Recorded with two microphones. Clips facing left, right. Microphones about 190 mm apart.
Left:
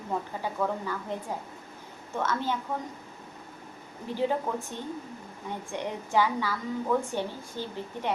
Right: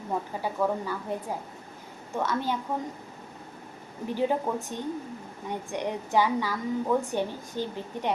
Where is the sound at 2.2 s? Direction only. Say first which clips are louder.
Right 1 dB; 15° right (ahead or behind).